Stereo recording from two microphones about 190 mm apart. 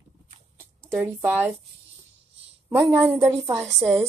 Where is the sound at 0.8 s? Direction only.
10° right (ahead or behind).